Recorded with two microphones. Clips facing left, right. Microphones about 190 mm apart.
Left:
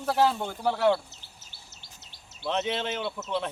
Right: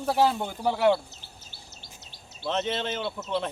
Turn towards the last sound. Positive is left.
turn(degrees=0)  # may be behind; listen again after turning